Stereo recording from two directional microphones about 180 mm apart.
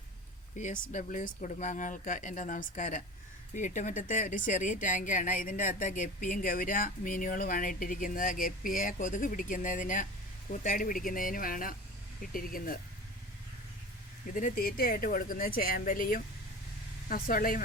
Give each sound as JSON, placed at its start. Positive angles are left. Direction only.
{"t": 0.5, "sound": "a woman's voice", "side_deg": 45}
{"t": 14.3, "sound": "a woman's voice", "side_deg": 50}